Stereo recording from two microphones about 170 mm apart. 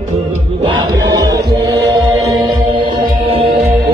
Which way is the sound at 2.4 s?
30° right (ahead or behind).